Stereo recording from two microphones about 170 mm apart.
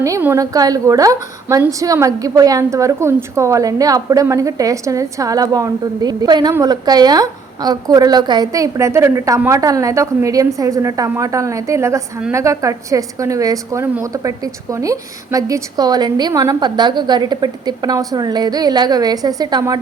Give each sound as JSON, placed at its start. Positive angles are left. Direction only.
{"t": 0.0, "sound": "a woman's voice", "side_deg": -15}